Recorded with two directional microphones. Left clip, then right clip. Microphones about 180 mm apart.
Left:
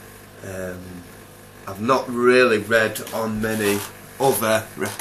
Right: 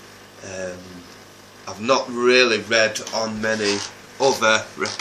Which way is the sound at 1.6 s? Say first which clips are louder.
Even; 5° right (ahead or behind).